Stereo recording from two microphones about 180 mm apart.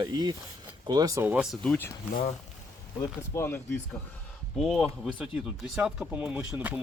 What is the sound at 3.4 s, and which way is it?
Speech, 15° left (ahead or behind).